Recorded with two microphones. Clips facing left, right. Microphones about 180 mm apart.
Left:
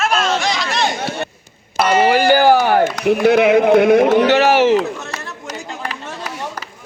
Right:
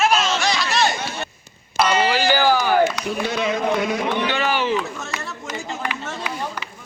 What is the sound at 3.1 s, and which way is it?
A man's voice, 65° left (ahead or behind).